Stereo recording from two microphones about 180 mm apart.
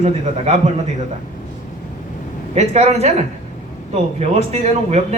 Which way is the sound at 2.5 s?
35° right (ahead or behind).